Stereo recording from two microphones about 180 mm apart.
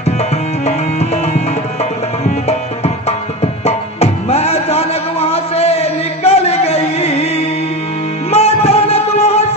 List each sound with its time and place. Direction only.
0.7 s music: 35° left (ahead or behind)
2.2 s music: 35° left (ahead or behind)
3.6 s tabla: 35° left (ahead or behind)
8.3 s music: 35° left (ahead or behind)